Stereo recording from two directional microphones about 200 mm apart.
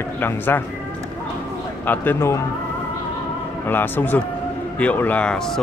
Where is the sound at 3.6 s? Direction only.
10° left (ahead or behind).